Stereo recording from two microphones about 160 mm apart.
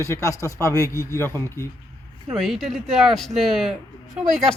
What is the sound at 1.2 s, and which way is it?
Speech, 15° left (ahead or behind).